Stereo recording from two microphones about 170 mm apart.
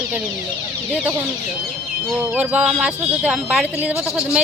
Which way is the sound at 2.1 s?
10° right (ahead or behind).